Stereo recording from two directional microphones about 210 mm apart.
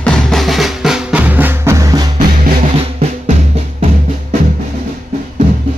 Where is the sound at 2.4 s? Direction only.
35° right (ahead or behind).